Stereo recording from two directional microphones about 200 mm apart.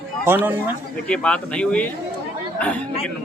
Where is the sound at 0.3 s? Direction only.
10° right (ahead or behind).